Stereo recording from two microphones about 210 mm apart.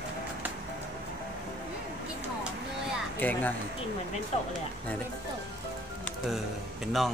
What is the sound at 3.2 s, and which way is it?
Speech, 10° left (ahead or behind).